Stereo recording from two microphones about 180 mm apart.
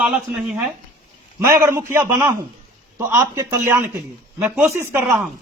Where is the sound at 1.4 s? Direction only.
15° right (ahead or behind).